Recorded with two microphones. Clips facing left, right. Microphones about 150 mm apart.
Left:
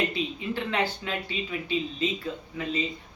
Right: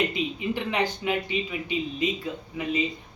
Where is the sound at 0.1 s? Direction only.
15° right (ahead or behind).